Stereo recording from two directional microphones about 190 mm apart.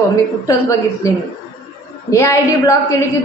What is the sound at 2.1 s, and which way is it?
Speech, 15° left (ahead or behind).